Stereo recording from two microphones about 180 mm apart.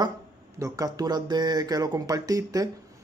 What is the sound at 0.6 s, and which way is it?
Speech, 20° right (ahead or behind).